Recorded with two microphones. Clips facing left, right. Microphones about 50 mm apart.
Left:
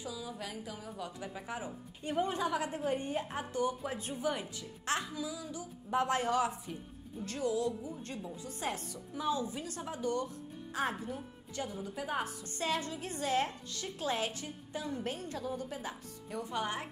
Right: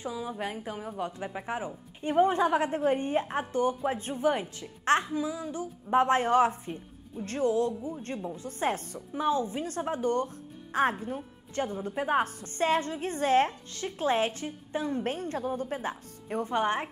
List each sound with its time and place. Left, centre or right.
0.0 s a woman's voice: right